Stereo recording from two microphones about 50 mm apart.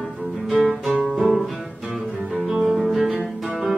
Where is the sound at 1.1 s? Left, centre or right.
Right.